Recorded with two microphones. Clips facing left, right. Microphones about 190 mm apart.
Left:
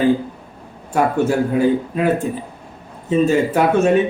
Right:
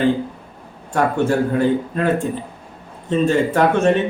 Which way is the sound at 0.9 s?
5° left (ahead or behind).